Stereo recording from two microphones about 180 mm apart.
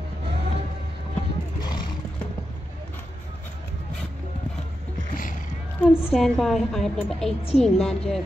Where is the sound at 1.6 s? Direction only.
25° left (ahead or behind).